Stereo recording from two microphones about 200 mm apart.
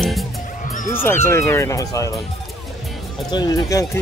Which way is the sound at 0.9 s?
10° left (ahead or behind).